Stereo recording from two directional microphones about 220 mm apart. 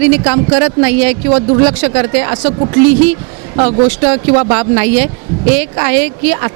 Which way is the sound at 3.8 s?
10° right (ahead or behind).